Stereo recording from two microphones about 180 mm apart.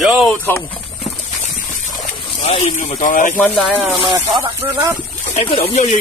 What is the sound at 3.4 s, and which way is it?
Speech, centre (ahead or behind).